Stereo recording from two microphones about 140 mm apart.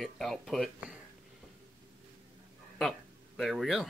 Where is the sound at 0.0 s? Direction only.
Centre (ahead or behind).